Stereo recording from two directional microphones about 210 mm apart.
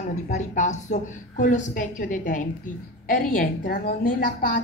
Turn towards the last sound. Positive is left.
turn(degrees=40)  # may be behind; listen again after turning